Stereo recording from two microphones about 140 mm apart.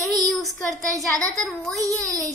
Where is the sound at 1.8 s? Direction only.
25° right (ahead or behind).